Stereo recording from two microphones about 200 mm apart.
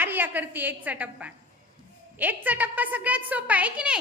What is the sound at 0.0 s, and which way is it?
A woman's voice, 10° right (ahead or behind).